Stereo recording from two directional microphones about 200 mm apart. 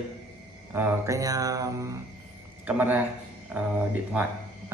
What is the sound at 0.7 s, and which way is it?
Speech, 15° right (ahead or behind).